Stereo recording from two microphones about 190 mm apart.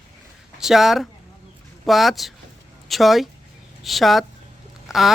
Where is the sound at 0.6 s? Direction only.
Centre (ahead or behind).